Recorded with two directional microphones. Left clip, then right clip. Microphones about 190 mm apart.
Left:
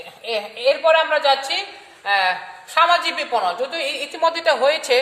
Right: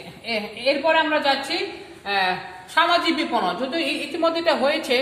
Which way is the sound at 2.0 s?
60° left (ahead or behind).